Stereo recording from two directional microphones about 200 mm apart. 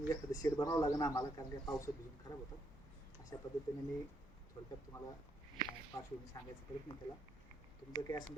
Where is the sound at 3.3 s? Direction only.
15° left (ahead or behind).